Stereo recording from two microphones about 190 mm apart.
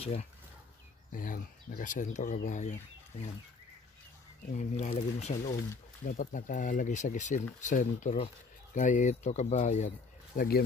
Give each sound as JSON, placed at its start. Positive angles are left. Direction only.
{"t": 0.0, "sound": "speech", "side_deg": 35}
{"t": 1.1, "sound": "speech", "side_deg": 45}
{"t": 4.5, "sound": "speech", "side_deg": 45}